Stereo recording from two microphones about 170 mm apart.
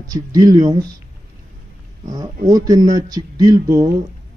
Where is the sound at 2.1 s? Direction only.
25° right (ahead or behind).